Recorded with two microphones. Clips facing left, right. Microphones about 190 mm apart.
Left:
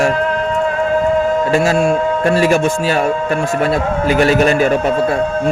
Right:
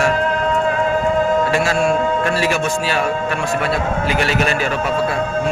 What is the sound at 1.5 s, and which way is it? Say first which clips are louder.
A man's voice: left 3 dB; 40° left (ahead or behind).